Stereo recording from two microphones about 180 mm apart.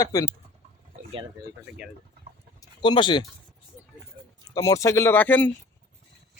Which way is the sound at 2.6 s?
25° left (ahead or behind).